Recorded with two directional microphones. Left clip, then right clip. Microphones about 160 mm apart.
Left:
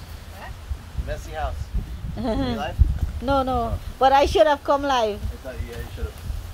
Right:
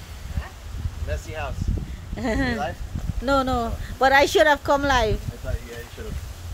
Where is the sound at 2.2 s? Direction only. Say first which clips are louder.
Right 1 dB; 30° right (ahead or behind).